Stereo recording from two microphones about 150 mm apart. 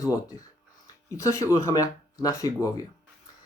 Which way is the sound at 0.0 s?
25° left (ahead or behind).